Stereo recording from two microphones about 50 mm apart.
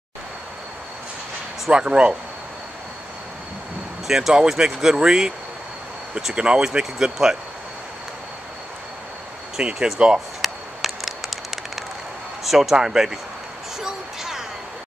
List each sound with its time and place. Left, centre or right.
1.7 s speech: centre
4.1 s speech: centre
6.3 s speech: centre
9.6 s speech: right
10.4 s a sound: centre
12.4 s speech: centre
13.7 s a sound: centre